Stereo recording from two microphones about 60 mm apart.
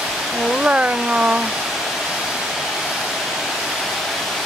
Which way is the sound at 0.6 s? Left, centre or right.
Centre.